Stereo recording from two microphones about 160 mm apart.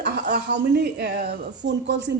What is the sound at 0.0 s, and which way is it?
Speech, 85° right.